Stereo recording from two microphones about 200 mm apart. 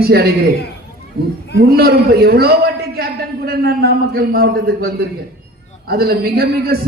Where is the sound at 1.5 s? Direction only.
50° right (ahead or behind).